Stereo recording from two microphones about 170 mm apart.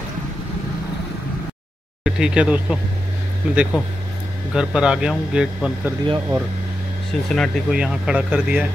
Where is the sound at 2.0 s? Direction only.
5° right (ahead or behind).